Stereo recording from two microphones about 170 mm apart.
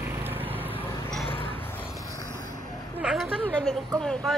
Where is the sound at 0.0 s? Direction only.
10° right (ahead or behind).